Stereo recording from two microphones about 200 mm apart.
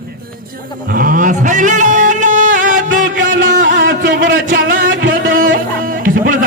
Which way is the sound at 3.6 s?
60° right (ahead or behind).